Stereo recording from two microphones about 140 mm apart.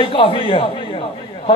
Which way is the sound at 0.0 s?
40° left (ahead or behind).